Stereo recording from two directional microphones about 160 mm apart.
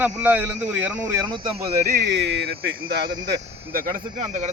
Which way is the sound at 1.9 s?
90° right.